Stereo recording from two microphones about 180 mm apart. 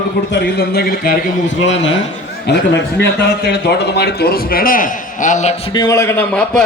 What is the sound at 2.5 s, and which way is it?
A man's voice, 70° left (ahead or behind).